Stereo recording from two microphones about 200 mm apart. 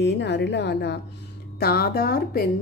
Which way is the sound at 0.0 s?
60° left (ahead or behind).